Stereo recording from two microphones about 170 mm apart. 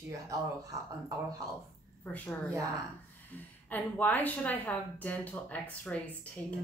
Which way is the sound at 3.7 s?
10° left (ahead or behind).